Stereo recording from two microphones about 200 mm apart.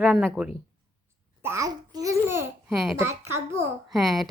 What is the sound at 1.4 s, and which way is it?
Babbling, 15° right (ahead or behind).